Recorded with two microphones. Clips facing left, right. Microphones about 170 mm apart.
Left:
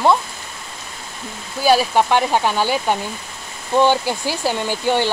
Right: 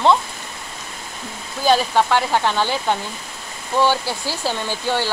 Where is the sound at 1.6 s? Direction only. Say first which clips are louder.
Left 2 dB; 10° left (ahead or behind).